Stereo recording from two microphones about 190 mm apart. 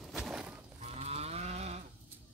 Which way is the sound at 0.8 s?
35° right (ahead or behind).